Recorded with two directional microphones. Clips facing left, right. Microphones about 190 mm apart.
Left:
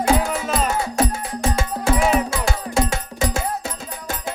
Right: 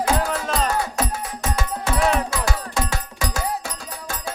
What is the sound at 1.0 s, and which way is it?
Music, 30° left (ahead or behind).